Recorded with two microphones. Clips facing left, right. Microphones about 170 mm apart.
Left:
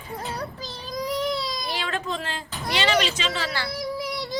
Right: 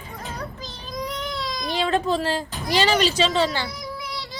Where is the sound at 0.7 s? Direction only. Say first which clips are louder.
Left 2 dB; 40° left (ahead or behind).